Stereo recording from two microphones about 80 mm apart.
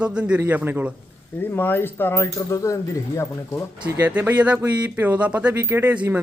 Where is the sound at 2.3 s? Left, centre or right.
Left.